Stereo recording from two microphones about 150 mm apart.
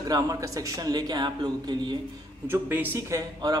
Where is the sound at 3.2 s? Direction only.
25° right (ahead or behind).